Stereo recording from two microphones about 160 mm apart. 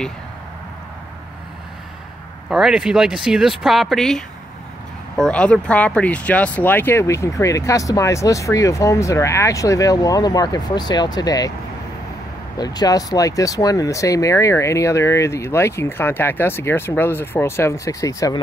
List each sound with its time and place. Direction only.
2.5 s speech: 5° right (ahead or behind); by 11.5 s 25° left (ahead or behind)
12.5 s speech: 25° left (ahead or behind)